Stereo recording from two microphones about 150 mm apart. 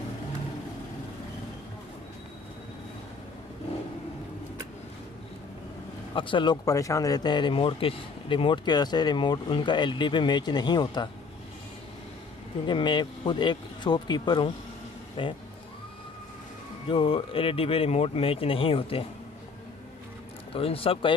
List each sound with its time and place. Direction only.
6.1 s speech: 35° left (ahead or behind)
12.6 s speech: 30° left (ahead or behind)
16.9 s speech: 35° left (ahead or behind)
20.5 s speech: 40° left (ahead or behind)